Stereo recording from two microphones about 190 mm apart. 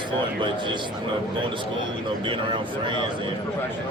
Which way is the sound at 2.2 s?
25° right (ahead or behind).